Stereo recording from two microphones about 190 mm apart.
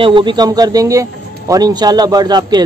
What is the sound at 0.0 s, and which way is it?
A man's voice, 25° right (ahead or behind).